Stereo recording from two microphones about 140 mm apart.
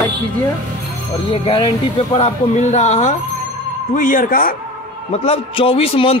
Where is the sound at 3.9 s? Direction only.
75° left (ahead or behind).